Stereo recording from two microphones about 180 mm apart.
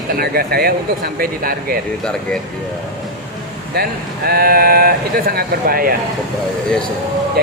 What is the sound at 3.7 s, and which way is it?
Speech, 60° right (ahead or behind).